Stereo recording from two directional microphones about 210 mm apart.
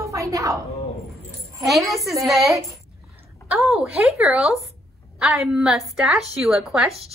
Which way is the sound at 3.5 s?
5° right (ahead or behind).